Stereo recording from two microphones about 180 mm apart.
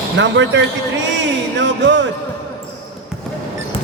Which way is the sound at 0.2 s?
85° right.